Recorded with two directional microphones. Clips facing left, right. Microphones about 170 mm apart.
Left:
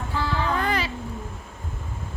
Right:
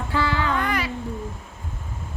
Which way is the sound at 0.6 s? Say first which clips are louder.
Even; 30° left (ahead or behind).